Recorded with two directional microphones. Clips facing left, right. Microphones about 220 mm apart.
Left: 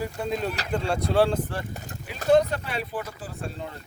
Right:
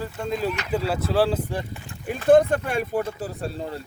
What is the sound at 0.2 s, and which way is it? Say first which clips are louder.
Speech: right 5 dB; centre (ahead or behind).